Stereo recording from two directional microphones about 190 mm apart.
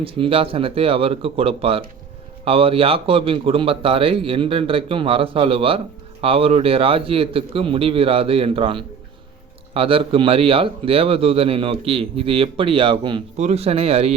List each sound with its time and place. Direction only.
0.0 s a man's voice: 30° right (ahead or behind)